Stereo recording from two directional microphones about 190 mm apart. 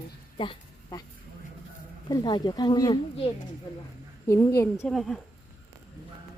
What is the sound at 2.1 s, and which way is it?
Speech, 20° left (ahead or behind).